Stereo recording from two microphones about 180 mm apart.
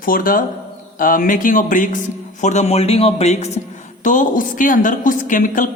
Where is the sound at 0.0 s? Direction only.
50° left (ahead or behind).